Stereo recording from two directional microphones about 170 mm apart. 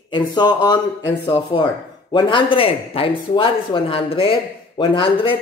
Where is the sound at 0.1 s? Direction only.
25° left (ahead or behind).